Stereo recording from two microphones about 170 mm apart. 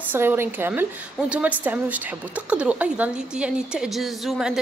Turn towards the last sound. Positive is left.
turn(degrees=0)  # may be behind; listen again after turning